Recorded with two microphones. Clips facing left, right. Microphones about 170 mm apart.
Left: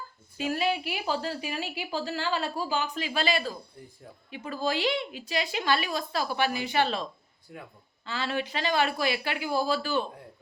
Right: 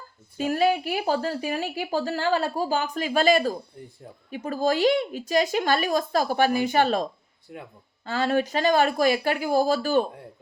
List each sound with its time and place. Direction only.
0.3 s speech: 45° right (ahead or behind)